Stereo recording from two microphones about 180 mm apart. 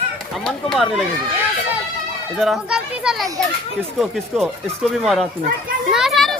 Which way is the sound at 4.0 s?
Centre (ahead or behind).